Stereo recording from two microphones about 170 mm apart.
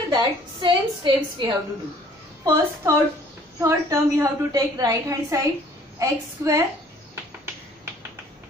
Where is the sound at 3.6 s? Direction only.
15° right (ahead or behind).